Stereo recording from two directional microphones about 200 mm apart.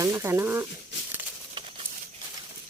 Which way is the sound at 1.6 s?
20° right (ahead or behind).